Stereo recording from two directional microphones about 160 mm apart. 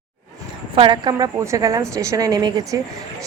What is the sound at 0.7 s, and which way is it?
A woman's voice, 30° right (ahead or behind).